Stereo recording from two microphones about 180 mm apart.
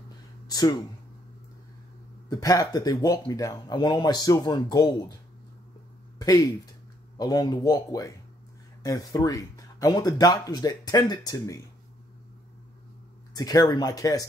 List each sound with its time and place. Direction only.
0.5 s speech: 20° left (ahead or behind)
2.2 s speech: 20° left (ahead or behind)
6.1 s speech: 20° left (ahead or behind)
13.3 s speech: 20° left (ahead or behind)